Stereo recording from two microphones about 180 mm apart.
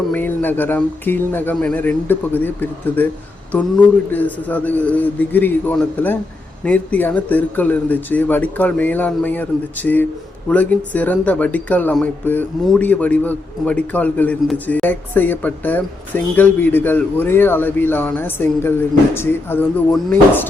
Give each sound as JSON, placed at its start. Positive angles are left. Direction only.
{"t": 0.1, "sound": "speech", "side_deg": 10}
{"t": 4.1, "sound": "speech", "side_deg": 10}